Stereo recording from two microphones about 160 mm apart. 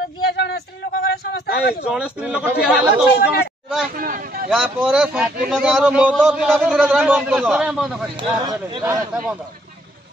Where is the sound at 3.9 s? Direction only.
60° right (ahead or behind).